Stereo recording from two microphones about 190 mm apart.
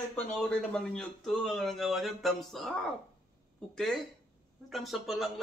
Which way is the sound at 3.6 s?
5° left (ahead or behind).